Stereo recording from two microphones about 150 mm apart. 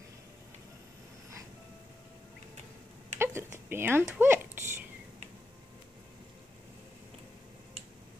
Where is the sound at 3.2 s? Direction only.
15° right (ahead or behind).